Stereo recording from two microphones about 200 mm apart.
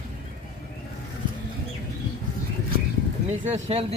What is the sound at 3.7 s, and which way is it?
Speech, 30° right (ahead or behind).